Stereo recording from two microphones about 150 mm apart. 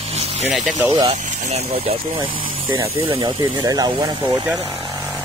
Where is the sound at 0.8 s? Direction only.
30° right (ahead or behind).